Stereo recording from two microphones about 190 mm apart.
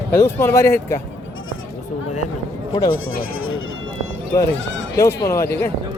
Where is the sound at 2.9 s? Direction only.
90° left.